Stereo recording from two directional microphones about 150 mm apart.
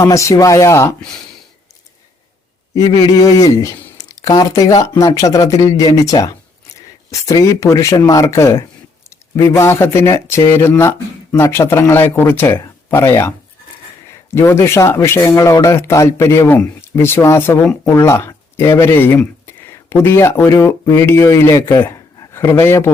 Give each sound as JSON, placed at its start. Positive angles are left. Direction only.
{"t": 0.0, "sound": "speech", "side_deg": 20}
{"t": 2.7, "sound": "speech", "side_deg": 25}
{"t": 14.3, "sound": "speech", "side_deg": 15}